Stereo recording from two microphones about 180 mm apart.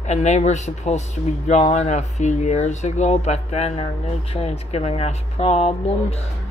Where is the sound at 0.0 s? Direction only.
40° left (ahead or behind).